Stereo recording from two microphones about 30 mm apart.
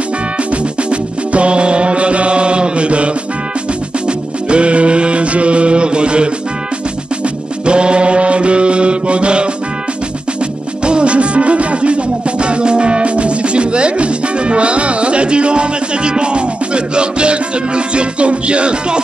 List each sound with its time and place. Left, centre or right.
0.8 s music: right
4.5 s mantra: right
7.6 s mantra: right
10.9 s music: right